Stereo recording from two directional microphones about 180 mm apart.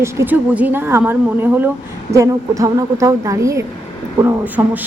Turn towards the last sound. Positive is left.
turn(degrees=-10)  # may be behind; listen again after turning